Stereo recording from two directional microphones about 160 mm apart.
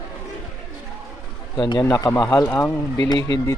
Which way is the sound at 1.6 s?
25° left (ahead or behind).